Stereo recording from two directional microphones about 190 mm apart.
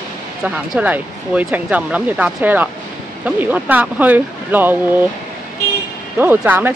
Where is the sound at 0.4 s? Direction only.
5° right (ahead or behind).